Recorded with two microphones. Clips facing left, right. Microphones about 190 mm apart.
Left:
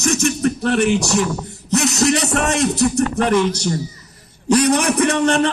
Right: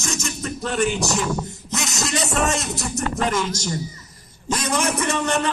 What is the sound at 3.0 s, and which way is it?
Speech, 65° left (ahead or behind).